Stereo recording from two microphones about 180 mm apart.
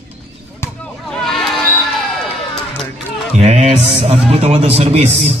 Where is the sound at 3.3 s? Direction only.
35° right (ahead or behind).